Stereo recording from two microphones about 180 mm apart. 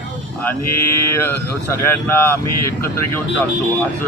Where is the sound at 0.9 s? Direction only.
15° left (ahead or behind).